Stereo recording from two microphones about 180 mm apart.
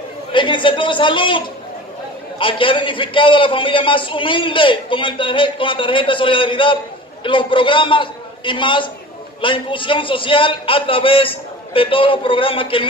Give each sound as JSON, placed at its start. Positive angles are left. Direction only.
{"t": 0.3, "sound": "a man's voice", "side_deg": 25}